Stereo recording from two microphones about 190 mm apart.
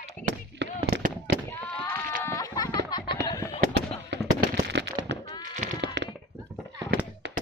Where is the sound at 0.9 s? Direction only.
55° right (ahead or behind).